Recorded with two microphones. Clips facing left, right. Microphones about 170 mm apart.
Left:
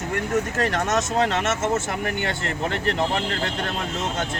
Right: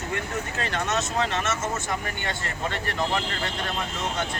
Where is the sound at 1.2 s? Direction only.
65° left (ahead or behind).